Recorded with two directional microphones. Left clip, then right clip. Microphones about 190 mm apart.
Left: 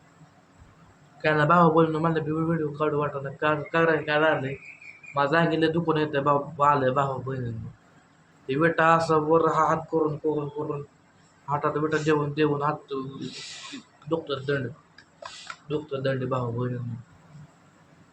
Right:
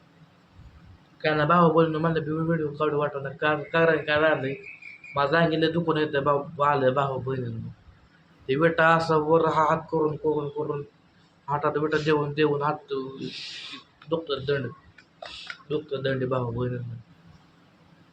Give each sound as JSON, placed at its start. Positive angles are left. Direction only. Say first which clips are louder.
{"t": 1.2, "sound": "a man's voice", "louder": "left 1 dB", "side_deg": 10}
{"t": 8.4, "sound": "a man's voice", "louder": "right 1 dB", "side_deg": -5}
{"t": 11.4, "sound": "a man's voice", "louder": "right 1 dB", "side_deg": -5}
{"t": 14.1, "sound": "a man's voice", "louder": "right 1 dB", "side_deg": 0}
{"t": 15.9, "sound": "a man's voice", "louder": "even", "side_deg": 0}